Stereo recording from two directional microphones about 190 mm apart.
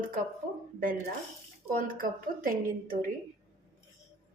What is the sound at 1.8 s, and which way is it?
A woman's voice, 45° right (ahead or behind).